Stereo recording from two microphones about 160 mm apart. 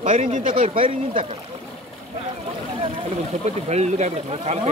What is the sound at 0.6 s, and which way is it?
Speech, 35° right (ahead or behind).